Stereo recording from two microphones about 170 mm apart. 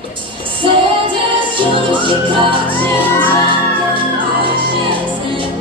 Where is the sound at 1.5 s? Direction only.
30° right (ahead or behind).